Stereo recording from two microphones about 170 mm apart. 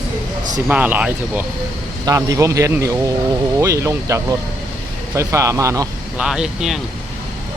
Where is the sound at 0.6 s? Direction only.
10° right (ahead or behind).